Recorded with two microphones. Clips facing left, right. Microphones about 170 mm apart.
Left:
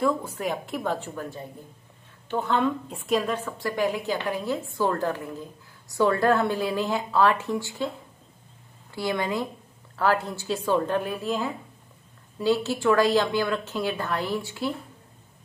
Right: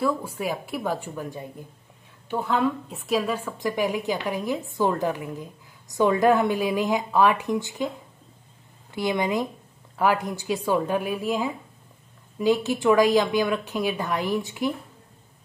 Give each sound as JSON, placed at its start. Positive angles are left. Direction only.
{"t": 0.0, "sound": "a woman's voice", "side_deg": -10}
{"t": 3.5, "sound": "a woman's voice", "side_deg": -15}
{"t": 8.9, "sound": "a woman's voice", "side_deg": -20}